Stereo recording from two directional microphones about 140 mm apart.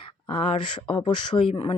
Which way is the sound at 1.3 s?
15° left (ahead or behind).